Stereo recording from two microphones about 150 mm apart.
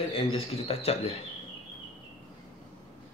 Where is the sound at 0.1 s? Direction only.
40° left (ahead or behind).